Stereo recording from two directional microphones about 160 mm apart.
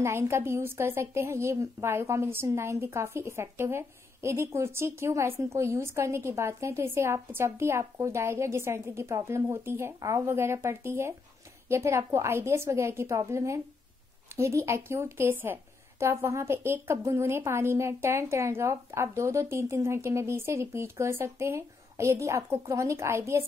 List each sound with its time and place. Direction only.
0.0 s speech: 15° right (ahead or behind)